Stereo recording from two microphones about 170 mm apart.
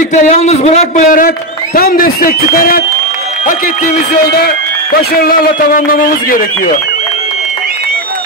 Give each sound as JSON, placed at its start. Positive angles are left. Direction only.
{"t": 0.1, "sound": "a man's voice", "side_deg": 40}
{"t": 3.8, "sound": "a man's voice", "side_deg": 65}